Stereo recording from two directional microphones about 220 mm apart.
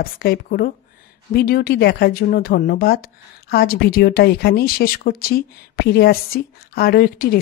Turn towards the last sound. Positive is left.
turn(degrees=45)  # may be behind; listen again after turning